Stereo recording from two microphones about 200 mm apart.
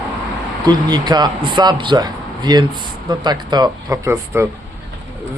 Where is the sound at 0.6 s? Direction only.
20° right (ahead or behind).